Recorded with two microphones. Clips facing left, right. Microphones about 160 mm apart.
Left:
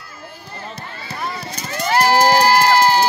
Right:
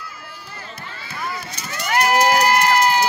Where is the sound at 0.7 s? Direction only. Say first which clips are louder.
Left 1 dB; 35° left (ahead or behind).